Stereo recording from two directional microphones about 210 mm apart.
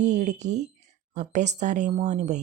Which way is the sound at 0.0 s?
35° right (ahead or behind).